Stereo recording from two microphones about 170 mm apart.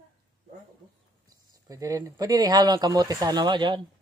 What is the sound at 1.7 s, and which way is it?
Speech, 20° right (ahead or behind).